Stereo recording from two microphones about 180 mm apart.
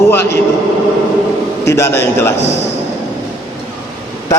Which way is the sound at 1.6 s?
15° left (ahead or behind).